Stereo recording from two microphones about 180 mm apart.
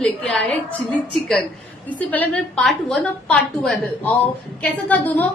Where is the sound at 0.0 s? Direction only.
5° left (ahead or behind).